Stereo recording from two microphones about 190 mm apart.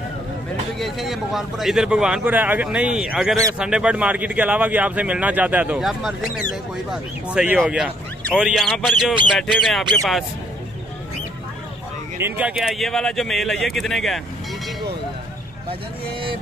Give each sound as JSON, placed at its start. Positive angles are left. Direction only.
{"t": 0.7, "sound": "speech", "side_deg": 0}
{"t": 12.2, "sound": "speech", "side_deg": -10}